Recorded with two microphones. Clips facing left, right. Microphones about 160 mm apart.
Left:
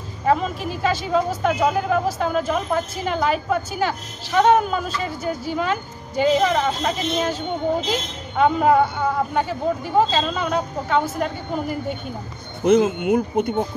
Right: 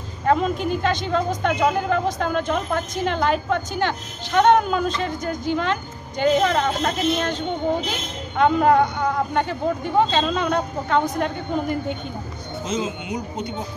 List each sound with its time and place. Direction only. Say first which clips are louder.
0.2 s speech: right 1 dB; 5° left (ahead or behind)
12.6 s speech: left 11 dB; 55° left (ahead or behind)